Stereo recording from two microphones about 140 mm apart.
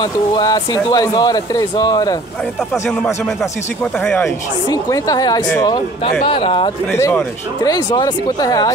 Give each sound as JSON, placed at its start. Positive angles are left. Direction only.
{"t": 0.0, "sound": "speech", "side_deg": 30}
{"t": 4.0, "sound": "speech", "side_deg": 15}
{"t": 4.6, "sound": "speech", "side_deg": 25}
{"t": 6.0, "sound": "speech", "side_deg": 40}
{"t": 6.9, "sound": "speech", "side_deg": 20}